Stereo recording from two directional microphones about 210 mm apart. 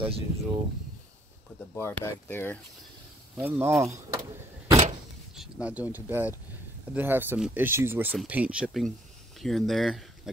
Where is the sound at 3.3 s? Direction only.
10° right (ahead or behind).